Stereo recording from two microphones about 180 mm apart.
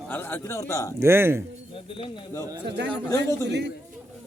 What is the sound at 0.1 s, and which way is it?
Speech, 10° left (ahead or behind).